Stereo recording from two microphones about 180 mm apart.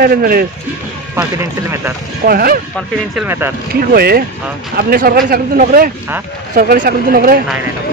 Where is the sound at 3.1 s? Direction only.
10° right (ahead or behind).